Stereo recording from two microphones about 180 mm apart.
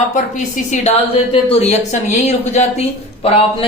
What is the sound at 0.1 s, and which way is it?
A woman's voice, 45° left (ahead or behind).